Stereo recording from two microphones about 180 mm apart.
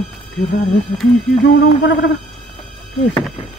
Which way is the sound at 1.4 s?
80° left.